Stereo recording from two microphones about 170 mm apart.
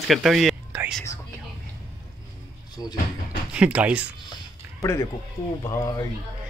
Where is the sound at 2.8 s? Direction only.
25° left (ahead or behind).